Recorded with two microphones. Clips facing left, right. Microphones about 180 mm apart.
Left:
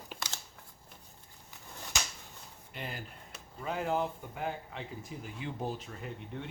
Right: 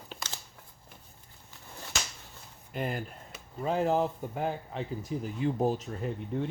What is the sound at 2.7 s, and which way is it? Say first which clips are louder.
Speech: right 9 dB; 50° right (ahead or behind).